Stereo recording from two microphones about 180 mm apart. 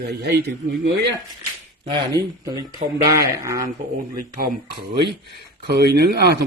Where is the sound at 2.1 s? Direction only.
20° right (ahead or behind).